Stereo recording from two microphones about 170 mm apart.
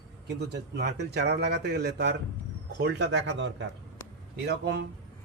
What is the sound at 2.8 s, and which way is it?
Speech, 90° right.